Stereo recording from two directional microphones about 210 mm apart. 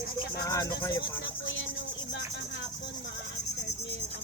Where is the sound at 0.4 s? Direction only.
20° left (ahead or behind).